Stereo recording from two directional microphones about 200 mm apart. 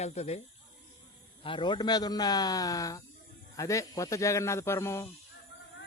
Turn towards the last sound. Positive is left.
turn(degrees=15)  # may be behind; listen again after turning